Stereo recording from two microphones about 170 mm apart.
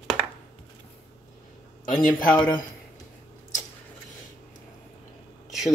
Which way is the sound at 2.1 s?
5° left (ahead or behind).